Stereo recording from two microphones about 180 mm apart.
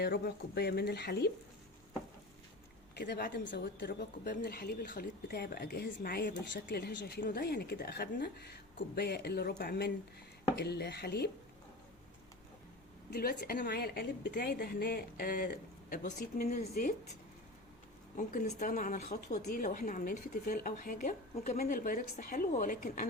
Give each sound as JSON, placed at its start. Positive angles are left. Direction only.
{"t": 0.0, "sound": "a woman's voice", "side_deg": 65}
{"t": 2.9, "sound": "a woman's voice", "side_deg": 65}
{"t": 3.4, "sound": "a woman's voice", "side_deg": 80}
{"t": 6.7, "sound": "a woman's voice", "side_deg": 65}
{"t": 10.5, "sound": "a woman's voice", "side_deg": 70}
{"t": 13.1, "sound": "a woman's voice", "side_deg": 55}
{"t": 15.9, "sound": "a woman's voice", "side_deg": 45}
{"t": 18.2, "sound": "speech", "side_deg": 50}
{"t": 21.3, "sound": "a woman's voice", "side_deg": 40}
{"t": 21.6, "sound": "speech", "side_deg": 55}